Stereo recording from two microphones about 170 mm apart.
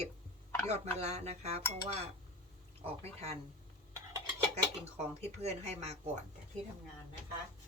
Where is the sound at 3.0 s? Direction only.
40° right (ahead or behind).